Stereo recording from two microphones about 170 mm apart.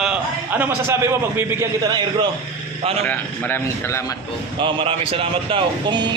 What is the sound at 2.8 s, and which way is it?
Speech, 35° right (ahead or behind).